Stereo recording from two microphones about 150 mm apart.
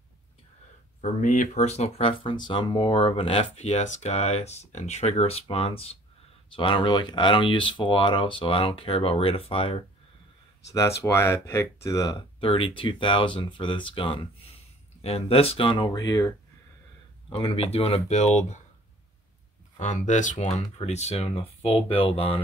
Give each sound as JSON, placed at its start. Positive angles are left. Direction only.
{"t": 1.0, "sound": "speech", "side_deg": 55}
{"t": 10.7, "sound": "speech", "side_deg": 20}
{"t": 12.4, "sound": "speech", "side_deg": 35}
{"t": 17.3, "sound": "speech", "side_deg": 35}
{"t": 19.8, "sound": "speech", "side_deg": 55}